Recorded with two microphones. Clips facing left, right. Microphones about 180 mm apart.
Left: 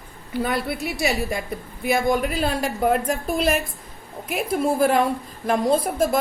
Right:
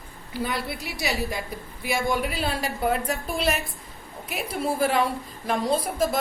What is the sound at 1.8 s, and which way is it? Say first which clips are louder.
A woman's voice: left 5 dB; 45° left (ahead or behind).